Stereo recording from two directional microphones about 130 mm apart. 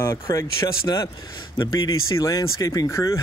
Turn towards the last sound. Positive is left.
turn(degrees=20)  # may be behind; listen again after turning